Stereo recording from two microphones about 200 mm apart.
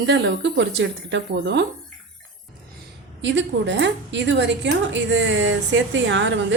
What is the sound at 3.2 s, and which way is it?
A woman's voice, 65° right (ahead or behind).